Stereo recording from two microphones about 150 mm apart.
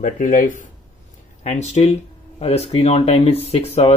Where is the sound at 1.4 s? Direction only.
50° left (ahead or behind).